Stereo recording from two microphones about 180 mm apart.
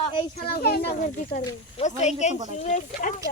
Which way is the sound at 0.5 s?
60° left (ahead or behind).